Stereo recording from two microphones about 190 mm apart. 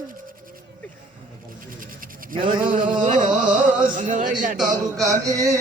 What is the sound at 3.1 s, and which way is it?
Carnatic music, 40° right (ahead or behind).